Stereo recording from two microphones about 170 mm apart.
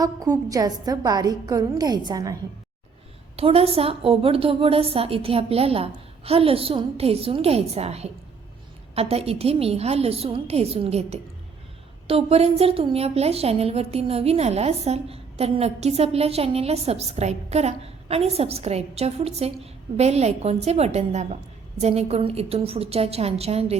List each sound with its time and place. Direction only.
0.0 s a woman's voice: 20° right (ahead or behind)
3.3 s a woman's voice: 35° right (ahead or behind)